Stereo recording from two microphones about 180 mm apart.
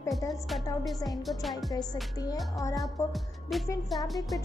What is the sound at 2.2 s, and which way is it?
Speech, 20° left (ahead or behind).